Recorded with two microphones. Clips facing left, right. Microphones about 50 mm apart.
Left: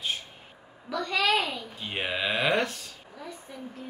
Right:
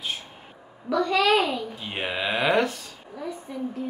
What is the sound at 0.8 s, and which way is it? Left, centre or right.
A child's voice, centre.